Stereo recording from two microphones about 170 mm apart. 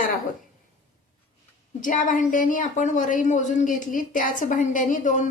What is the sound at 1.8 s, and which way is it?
A woman's voice, 50° left (ahead or behind).